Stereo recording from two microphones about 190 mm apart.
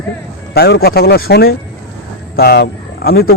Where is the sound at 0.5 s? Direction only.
60° left (ahead or behind).